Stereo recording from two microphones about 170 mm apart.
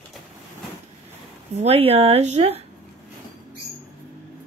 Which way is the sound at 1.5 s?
40° right (ahead or behind).